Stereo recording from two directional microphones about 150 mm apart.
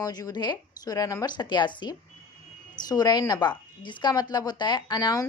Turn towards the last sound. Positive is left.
turn(degrees=25)  # may be behind; listen again after turning